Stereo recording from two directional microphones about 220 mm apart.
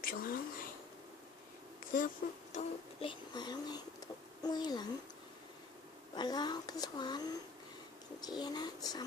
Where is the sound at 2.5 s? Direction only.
25° left (ahead or behind).